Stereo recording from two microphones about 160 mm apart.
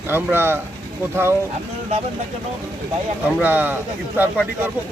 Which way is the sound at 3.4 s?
10° right (ahead or behind).